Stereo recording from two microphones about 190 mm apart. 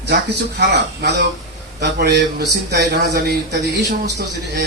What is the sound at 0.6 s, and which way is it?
A man's voice, 60° right (ahead or behind).